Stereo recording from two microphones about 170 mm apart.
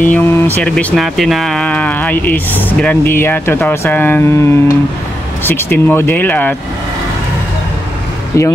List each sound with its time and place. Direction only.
0.0 s speech: 10° left (ahead or behind)
8.3 s speech: 15° left (ahead or behind)